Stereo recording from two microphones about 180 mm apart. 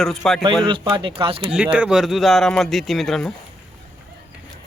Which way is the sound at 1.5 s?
5° right (ahead or behind).